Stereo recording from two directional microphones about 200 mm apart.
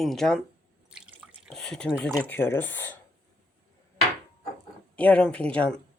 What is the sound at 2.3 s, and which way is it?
Speech, 10° left (ahead or behind).